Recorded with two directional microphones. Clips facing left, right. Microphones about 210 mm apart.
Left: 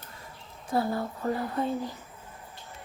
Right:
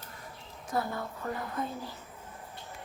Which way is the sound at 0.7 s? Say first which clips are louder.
Left 5 dB; 30° left (ahead or behind).